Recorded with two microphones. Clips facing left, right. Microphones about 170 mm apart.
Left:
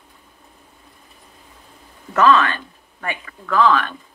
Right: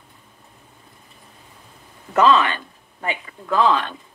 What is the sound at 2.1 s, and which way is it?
Speech, 20° right (ahead or behind).